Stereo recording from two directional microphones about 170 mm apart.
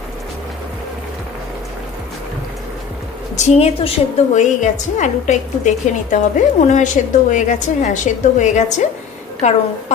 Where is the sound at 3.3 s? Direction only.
40° left (ahead or behind).